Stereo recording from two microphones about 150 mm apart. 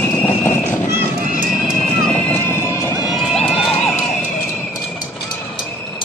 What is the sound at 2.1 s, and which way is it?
Horse, 10° left (ahead or behind).